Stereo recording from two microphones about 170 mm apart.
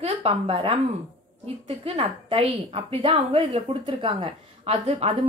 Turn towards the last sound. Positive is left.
turn(degrees=-35)  # may be behind; listen again after turning